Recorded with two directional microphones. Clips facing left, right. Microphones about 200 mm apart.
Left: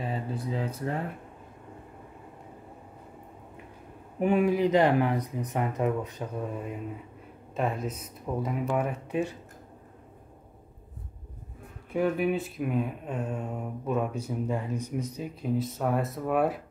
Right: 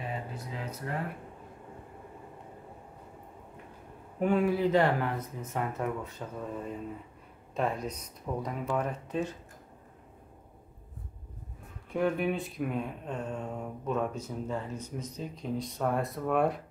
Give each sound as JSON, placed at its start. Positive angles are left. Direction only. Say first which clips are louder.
{"t": 0.0, "sound": "speech", "louder": "left 5 dB", "side_deg": 30}
{"t": 4.2, "sound": "speech", "louder": "left 3 dB", "side_deg": 15}
{"t": 11.9, "sound": "speech", "louder": "left 3 dB", "side_deg": 5}